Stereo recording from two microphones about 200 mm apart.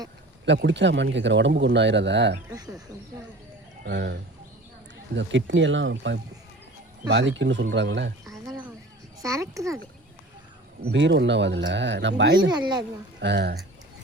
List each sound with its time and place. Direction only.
0.4 s speech: 60° right (ahead or behind)
3.8 s speech: 60° right (ahead or behind)
9.2 s a child's voice: 15° right (ahead or behind)
10.9 s speech: 60° right (ahead or behind)
12.5 s speech: 20° right (ahead or behind)
13.1 s speech: 60° right (ahead or behind)